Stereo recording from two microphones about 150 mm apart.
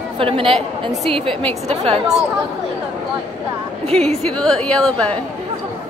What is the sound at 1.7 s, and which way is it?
Speech, 45° right (ahead or behind).